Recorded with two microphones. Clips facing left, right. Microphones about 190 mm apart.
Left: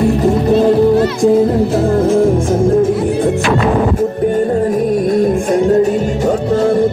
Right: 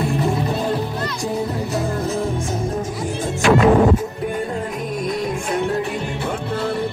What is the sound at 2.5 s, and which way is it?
Music, 55° left (ahead or behind).